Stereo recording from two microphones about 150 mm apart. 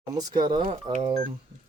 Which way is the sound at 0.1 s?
25° right (ahead or behind).